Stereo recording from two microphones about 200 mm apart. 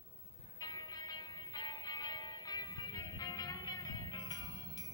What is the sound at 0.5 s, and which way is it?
Music, 20° left (ahead or behind).